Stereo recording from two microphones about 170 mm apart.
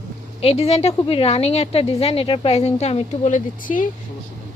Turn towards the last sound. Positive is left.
turn(degrees=50)  # may be behind; listen again after turning